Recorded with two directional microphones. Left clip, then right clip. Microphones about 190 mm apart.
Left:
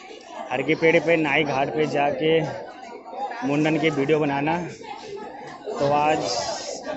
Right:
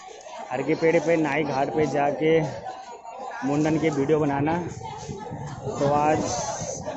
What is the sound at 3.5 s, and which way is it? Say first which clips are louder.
A man's voice: left 1 dB; 5° right (ahead or behind).